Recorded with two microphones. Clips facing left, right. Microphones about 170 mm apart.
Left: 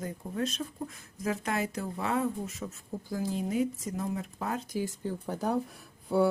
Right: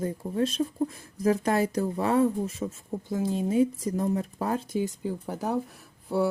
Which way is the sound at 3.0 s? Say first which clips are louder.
Right 5 dB; 20° right (ahead or behind).